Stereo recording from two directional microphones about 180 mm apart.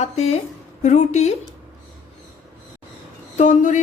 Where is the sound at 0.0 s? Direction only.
35° left (ahead or behind).